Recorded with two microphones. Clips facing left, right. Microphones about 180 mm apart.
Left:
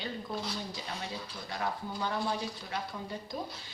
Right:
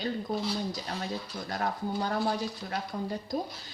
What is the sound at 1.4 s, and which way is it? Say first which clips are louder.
A woman's voice: right 4 dB; 45° right (ahead or behind).